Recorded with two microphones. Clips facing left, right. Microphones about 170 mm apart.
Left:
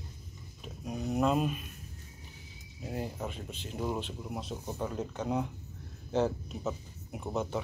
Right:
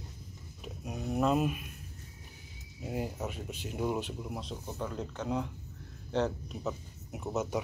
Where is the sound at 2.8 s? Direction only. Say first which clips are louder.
Right 1 dB; 5° right (ahead or behind).